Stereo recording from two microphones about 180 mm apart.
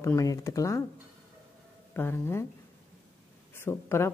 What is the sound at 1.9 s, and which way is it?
Speech, 15° left (ahead or behind).